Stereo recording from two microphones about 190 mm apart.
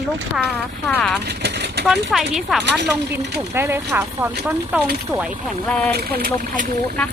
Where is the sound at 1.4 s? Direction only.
65° right (ahead or behind).